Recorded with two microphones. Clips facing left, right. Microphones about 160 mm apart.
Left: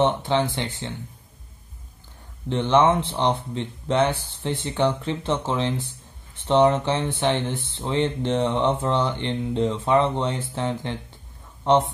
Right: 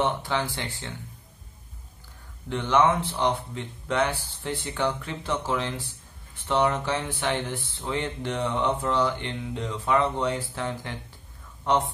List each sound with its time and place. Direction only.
0.0 s speech: 25° left (ahead or behind)
2.5 s a man's voice: 25° left (ahead or behind)